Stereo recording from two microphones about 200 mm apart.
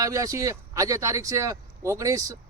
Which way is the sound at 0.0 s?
15° right (ahead or behind).